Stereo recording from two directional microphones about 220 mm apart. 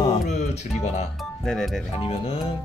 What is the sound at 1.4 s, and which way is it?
Speech, centre (ahead or behind).